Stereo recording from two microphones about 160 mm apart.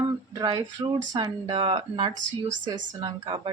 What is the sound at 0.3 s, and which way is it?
A woman's voice, 25° right (ahead or behind).